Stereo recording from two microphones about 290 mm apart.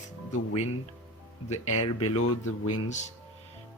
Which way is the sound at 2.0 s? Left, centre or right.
Left.